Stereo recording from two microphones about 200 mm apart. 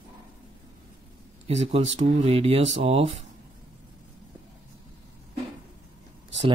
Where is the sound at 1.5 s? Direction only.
35° right (ahead or behind).